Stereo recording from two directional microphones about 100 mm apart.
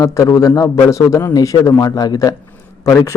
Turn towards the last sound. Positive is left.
turn(degrees=30)  # may be behind; listen again after turning